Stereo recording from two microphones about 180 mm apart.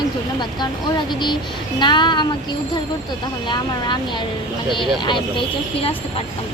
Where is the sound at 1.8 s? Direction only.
25° left (ahead or behind).